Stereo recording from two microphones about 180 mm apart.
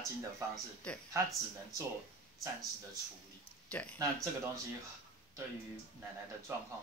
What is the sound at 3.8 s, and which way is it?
Speech, 10° left (ahead or behind).